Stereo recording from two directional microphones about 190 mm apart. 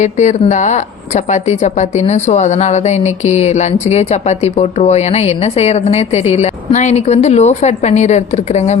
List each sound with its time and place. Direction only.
0.0 s a woman's voice: 40° left (ahead or behind)